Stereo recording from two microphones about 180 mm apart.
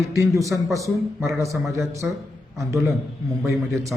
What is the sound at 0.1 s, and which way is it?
A man's voice, 15° right (ahead or behind).